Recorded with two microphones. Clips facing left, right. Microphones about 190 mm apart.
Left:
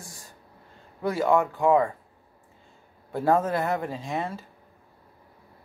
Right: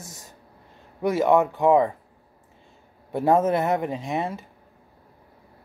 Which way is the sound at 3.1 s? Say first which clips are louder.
Right 3 dB; 20° right (ahead or behind).